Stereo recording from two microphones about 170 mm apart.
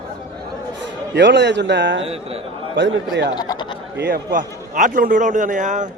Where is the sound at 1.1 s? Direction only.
90° right.